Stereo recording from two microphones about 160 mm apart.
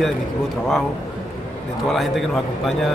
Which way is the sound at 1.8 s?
Centre (ahead or behind).